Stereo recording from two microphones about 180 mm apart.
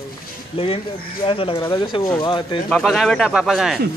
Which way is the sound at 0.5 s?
30° left (ahead or behind).